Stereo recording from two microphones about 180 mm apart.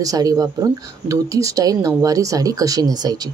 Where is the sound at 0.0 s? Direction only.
20° right (ahead or behind).